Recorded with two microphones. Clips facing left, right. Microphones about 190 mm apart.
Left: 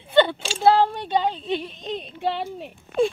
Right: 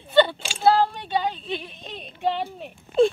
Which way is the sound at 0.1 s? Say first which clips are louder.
Even; 20° left (ahead or behind).